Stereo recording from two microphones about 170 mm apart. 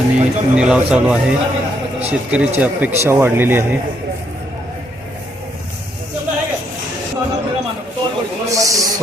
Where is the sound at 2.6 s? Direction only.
10° right (ahead or behind).